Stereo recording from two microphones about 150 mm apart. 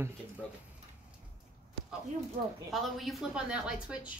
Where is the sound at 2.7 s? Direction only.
Centre (ahead or behind).